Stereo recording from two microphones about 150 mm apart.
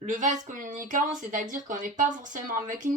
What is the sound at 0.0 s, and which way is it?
Speech, 55° right (ahead or behind).